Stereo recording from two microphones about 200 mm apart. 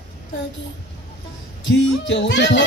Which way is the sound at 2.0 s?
65° left (ahead or behind).